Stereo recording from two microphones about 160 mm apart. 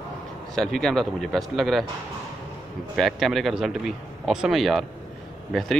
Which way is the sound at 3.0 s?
Centre (ahead or behind).